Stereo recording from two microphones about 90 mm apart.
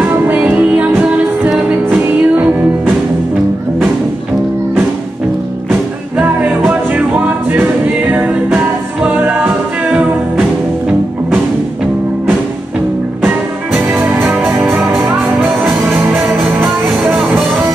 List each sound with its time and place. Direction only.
0.0 s music: 20° right (ahead or behind)
5.7 s music: 15° right (ahead or behind)
14.3 s music: 10° right (ahead or behind)
16.3 s music: 5° right (ahead or behind)